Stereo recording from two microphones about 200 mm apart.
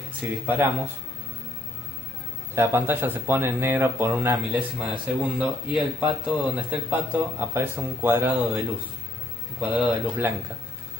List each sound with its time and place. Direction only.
0.2 s speech: 10° right (ahead or behind)
2.5 s speech: 10° right (ahead or behind)
9.6 s speech: 10° right (ahead or behind)